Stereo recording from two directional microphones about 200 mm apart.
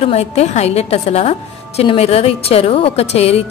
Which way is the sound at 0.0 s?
30° left (ahead or behind).